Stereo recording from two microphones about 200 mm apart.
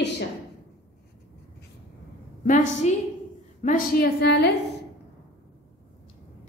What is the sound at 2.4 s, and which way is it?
A woman's voice, 40° left (ahead or behind).